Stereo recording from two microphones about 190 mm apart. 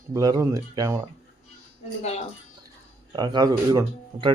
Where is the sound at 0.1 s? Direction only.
20° right (ahead or behind).